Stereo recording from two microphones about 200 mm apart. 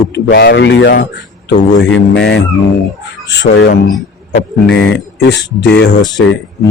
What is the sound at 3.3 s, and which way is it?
Speech, 60° left (ahead or behind).